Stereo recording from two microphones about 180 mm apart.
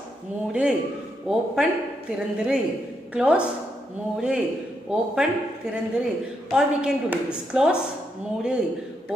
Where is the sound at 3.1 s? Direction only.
5° right (ahead or behind).